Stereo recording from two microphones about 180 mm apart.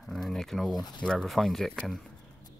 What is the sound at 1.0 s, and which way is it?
Speech, 5° left (ahead or behind).